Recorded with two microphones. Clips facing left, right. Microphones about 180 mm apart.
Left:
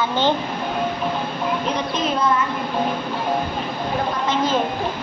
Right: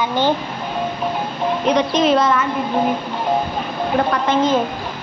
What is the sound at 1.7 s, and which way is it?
Speech, 90° right.